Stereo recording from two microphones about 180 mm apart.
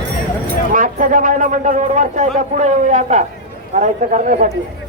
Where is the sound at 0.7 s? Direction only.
45° right (ahead or behind).